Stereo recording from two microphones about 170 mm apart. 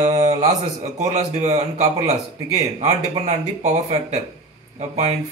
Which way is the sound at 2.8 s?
45° right (ahead or behind).